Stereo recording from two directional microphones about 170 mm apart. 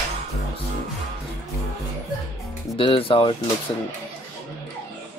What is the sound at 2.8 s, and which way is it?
Speech, 30° left (ahead or behind).